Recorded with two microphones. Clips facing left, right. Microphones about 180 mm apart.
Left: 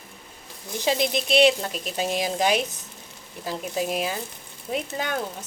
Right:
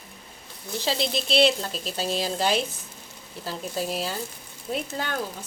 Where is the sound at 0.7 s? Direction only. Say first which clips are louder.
Left 3 dB; 15° left (ahead or behind).